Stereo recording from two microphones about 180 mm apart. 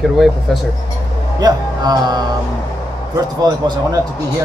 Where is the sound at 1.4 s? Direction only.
20° right (ahead or behind).